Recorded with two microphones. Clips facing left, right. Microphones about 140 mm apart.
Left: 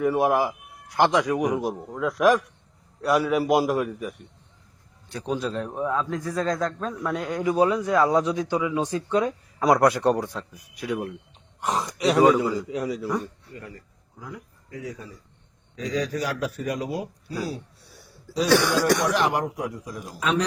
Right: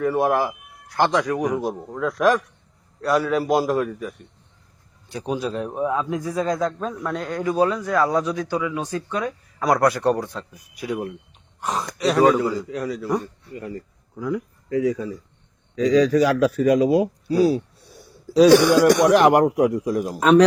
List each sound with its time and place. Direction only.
0.0 s a man's voice: 10° left (ahead or behind)
5.1 s a man's voice: 10° right (ahead or behind)
7.1 s a man's voice: 10° left (ahead or behind)
10.8 s speech: 5° right (ahead or behind)
11.6 s a man's voice: 20° left (ahead or behind)
13.5 s speech: 20° right (ahead or behind)
14.7 s speech: 90° right
18.4 s a man's voice: 15° right (ahead or behind)
19.0 s speech: 60° right (ahead or behind)
20.1 s a man's voice: 50° right (ahead or behind)